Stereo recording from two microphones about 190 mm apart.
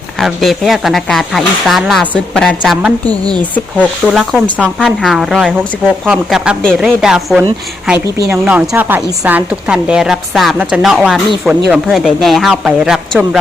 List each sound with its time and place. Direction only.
0.2 s a woman's voice: centre (ahead or behind)